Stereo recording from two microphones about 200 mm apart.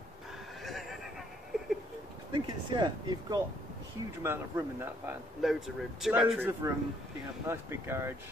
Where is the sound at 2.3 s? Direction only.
20° right (ahead or behind).